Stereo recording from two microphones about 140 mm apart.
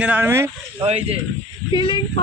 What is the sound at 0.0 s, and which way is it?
Speech, 15° right (ahead or behind).